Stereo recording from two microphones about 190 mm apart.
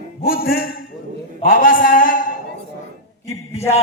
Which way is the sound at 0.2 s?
50° left (ahead or behind).